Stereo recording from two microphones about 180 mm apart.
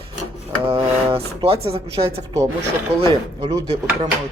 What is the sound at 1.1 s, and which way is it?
A woman's voice, 30° right (ahead or behind).